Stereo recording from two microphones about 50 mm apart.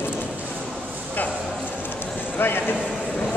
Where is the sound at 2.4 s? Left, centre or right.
Left.